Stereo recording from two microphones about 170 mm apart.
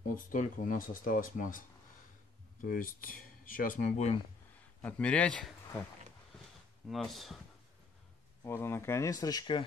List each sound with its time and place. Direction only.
0.1 s speech: 50° left (ahead or behind)
2.6 s speech: 55° left (ahead or behind)
4.8 s speech: 10° left (ahead or behind)
6.9 s speech: centre (ahead or behind)
8.5 s speech: 15° left (ahead or behind)